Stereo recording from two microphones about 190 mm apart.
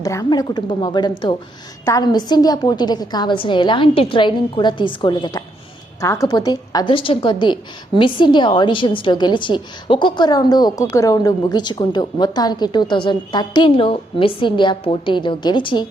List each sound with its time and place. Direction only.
0.0 s a woman's voice: 20° left (ahead or behind)